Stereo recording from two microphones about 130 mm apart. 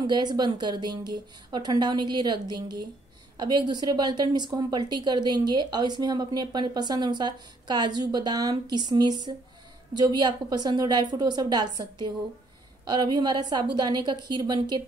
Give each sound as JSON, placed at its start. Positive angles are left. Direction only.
{"t": 0.0, "sound": "a woman's voice", "side_deg": -35}
{"t": 12.8, "sound": "a woman's voice", "side_deg": -30}